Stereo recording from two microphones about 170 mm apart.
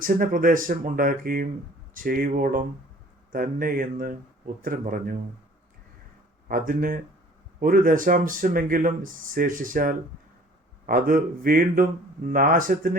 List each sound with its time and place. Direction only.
0.0 s speech: 55° right (ahead or behind)
6.5 s speech: 55° right (ahead or behind)